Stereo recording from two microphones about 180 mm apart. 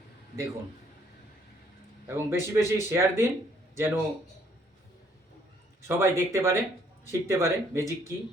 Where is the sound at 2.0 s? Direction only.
15° right (ahead or behind).